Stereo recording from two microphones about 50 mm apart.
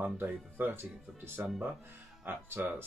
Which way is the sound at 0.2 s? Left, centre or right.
Right.